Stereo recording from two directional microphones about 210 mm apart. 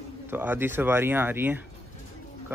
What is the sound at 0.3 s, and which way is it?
Speech, 10° right (ahead or behind).